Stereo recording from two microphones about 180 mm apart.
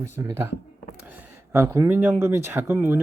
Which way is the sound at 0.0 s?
15° right (ahead or behind).